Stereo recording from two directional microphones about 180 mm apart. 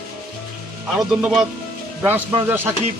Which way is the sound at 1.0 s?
5° right (ahead or behind).